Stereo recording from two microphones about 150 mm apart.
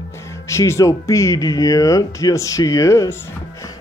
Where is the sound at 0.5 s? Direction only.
20° left (ahead or behind).